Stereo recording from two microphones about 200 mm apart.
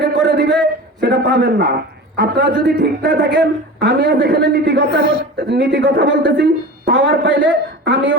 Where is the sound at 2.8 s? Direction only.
55° right (ahead or behind).